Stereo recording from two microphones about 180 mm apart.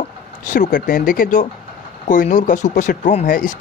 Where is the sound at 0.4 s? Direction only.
45° left (ahead or behind).